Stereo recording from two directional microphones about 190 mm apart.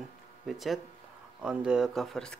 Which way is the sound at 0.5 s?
Centre (ahead or behind).